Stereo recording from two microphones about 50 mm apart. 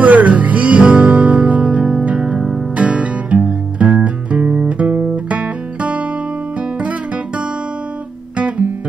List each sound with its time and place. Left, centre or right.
0.0 s music: right
1.8 s music: centre
8.4 s guitar: right